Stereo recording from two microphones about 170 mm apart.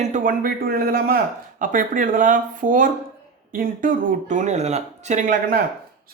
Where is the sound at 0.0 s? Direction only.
50° right (ahead or behind).